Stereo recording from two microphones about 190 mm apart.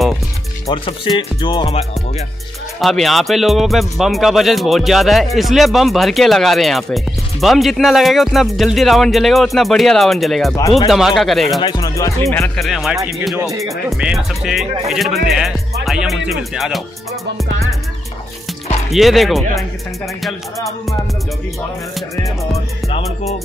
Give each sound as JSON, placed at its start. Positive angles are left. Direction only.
{"t": 0.7, "sound": "speech", "side_deg": 25}
{"t": 2.8, "sound": "speech", "side_deg": 0}
{"t": 11.6, "sound": "speech", "side_deg": 20}
{"t": 12.5, "sound": "speech", "side_deg": 0}
{"t": 13.4, "sound": "speech", "side_deg": -15}
{"t": 13.8, "sound": "speech", "side_deg": 0}
{"t": 18.9, "sound": "speech", "side_deg": 0}
{"t": 22.8, "sound": "music", "side_deg": 30}